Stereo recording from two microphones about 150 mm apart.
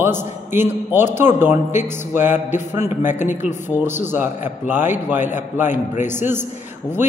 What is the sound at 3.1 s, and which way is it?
Speech, 55° left (ahead or behind).